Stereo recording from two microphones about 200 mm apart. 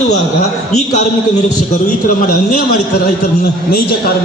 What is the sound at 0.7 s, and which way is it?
Speech, 35° left (ahead or behind).